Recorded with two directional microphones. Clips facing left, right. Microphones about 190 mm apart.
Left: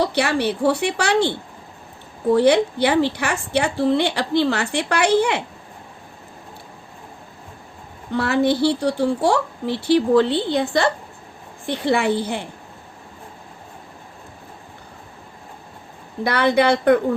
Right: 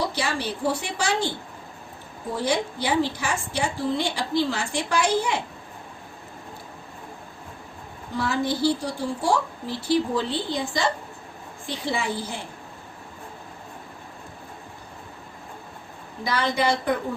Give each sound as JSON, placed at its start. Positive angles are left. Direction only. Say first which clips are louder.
{"t": 0.0, "sound": "a woman's voice", "louder": "left 7 dB", "side_deg": 65}
{"t": 2.3, "sound": "a woman's voice", "louder": "left 10 dB", "side_deg": 65}
{"t": 8.1, "sound": "a woman's voice", "louder": "left 7 dB", "side_deg": 65}
{"t": 16.2, "sound": "a woman's voice", "louder": "left 7 dB", "side_deg": 65}